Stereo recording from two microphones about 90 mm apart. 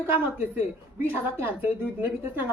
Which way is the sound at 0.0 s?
25° right (ahead or behind).